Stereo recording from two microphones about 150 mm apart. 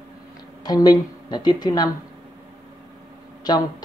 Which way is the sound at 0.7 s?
25° left (ahead or behind).